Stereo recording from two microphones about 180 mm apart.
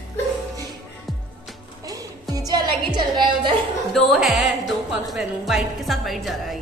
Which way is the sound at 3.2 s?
25° right (ahead or behind).